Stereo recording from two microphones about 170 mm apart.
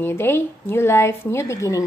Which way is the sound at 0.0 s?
15° left (ahead or behind).